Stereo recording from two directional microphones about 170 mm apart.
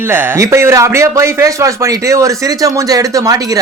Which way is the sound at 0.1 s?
15° right (ahead or behind).